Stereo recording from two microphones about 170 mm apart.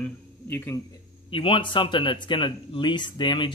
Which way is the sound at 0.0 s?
15° left (ahead or behind).